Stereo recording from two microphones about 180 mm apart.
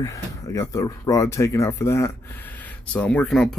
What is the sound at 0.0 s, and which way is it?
Speech, 20° left (ahead or behind).